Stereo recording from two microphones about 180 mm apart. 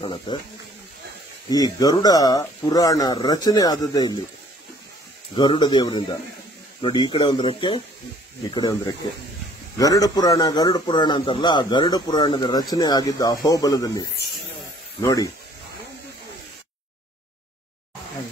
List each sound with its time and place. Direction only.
0.0 s a man's voice: 30° left (ahead or behind)
1.5 s a man's voice: 20° left (ahead or behind)
5.3 s a man's voice: 25° left (ahead or behind)
9.8 s a man's voice: 20° left (ahead or behind)